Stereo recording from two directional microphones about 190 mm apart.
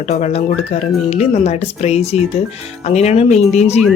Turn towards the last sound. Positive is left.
turn(degrees=35)  # may be behind; listen again after turning